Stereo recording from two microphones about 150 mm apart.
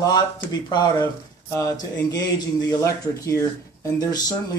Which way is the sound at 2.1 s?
20° left (ahead or behind).